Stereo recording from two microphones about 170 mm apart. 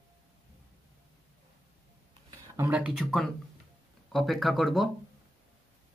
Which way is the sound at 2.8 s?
5° right (ahead or behind).